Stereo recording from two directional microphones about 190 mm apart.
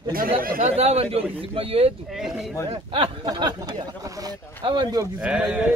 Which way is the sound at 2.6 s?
25° right (ahead or behind).